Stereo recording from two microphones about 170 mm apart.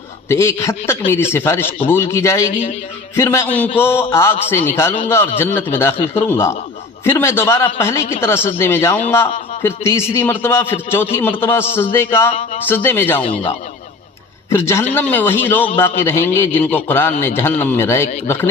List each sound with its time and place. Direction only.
0.3 s a man's voice: 15° left (ahead or behind)
13.2 s speech: 35° left (ahead or behind)
14.5 s a man's voice: 15° left (ahead or behind)